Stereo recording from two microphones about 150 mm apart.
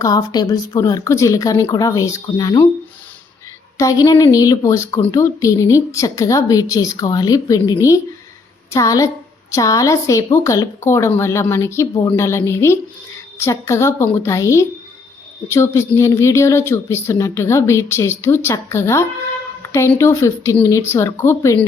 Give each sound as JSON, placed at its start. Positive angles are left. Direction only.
{"t": 0.0, "sound": "a woman's voice", "side_deg": 25}
{"t": 3.8, "sound": "a woman's voice", "side_deg": 20}
{"t": 19.6, "sound": "a sound", "side_deg": 20}
{"t": 20.0, "sound": "a woman's voice", "side_deg": 20}